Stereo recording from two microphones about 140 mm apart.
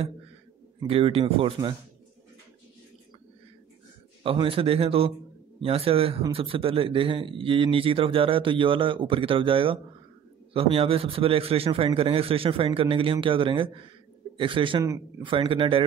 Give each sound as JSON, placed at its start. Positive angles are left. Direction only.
{"t": 0.8, "sound": "a man's voice", "side_deg": -45}
{"t": 4.2, "sound": "a man's voice", "side_deg": -40}
{"t": 14.8, "sound": "speech", "side_deg": -20}
{"t": 15.2, "sound": "speech", "side_deg": -40}